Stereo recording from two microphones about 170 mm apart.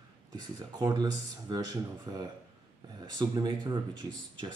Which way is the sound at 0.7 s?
20° right (ahead or behind).